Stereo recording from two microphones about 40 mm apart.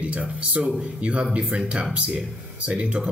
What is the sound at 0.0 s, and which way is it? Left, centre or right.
Speech, right.